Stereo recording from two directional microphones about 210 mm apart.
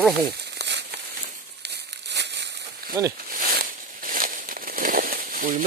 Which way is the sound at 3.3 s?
40° right (ahead or behind).